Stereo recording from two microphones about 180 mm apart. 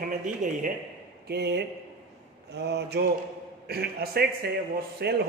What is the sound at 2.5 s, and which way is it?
Mantra, 70° right (ahead or behind).